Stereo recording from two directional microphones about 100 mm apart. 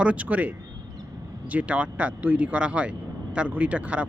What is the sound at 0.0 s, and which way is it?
Speech, 15° right (ahead or behind).